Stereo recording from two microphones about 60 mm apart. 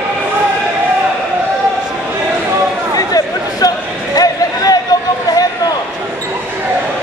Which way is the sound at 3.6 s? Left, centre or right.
Left.